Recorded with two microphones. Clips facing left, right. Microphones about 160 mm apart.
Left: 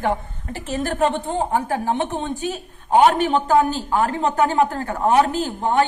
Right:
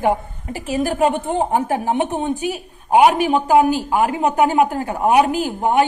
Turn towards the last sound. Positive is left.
turn(degrees=-15)  # may be behind; listen again after turning